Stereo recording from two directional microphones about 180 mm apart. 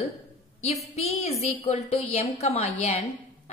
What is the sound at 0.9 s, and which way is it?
A woman's voice, 35° left (ahead or behind).